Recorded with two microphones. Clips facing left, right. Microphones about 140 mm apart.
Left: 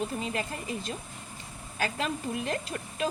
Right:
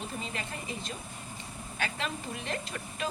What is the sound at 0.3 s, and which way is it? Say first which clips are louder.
Speech: left 5 dB; 40° left (ahead or behind).